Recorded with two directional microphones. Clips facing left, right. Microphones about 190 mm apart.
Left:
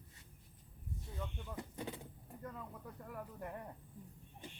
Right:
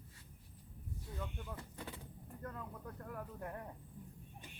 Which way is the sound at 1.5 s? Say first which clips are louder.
Left 4 dB; 15° left (ahead or behind).